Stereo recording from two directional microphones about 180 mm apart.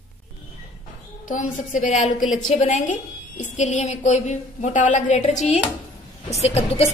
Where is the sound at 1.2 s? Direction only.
45° left (ahead or behind).